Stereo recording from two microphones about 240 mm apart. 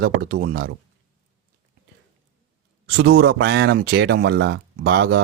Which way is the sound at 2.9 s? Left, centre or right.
Right.